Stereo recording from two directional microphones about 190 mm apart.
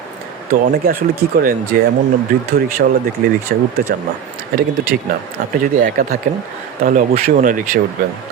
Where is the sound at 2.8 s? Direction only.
55° right (ahead or behind).